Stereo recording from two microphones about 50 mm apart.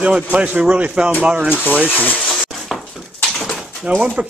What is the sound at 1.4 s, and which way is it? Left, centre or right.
Speech, left.